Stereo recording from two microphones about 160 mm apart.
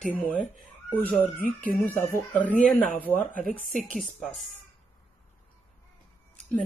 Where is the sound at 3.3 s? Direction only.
60° right (ahead or behind).